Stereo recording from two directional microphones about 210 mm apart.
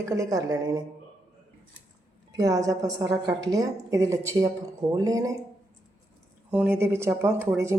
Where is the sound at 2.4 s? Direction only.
15° right (ahead or behind).